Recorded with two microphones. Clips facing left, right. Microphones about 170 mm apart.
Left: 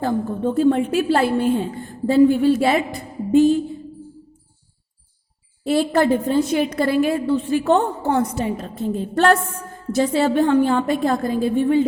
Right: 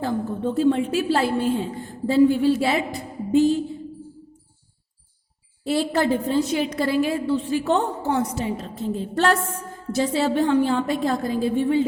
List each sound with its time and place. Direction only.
0.0 s a woman's voice: 50° left (ahead or behind)
5.6 s a woman's voice: 55° left (ahead or behind)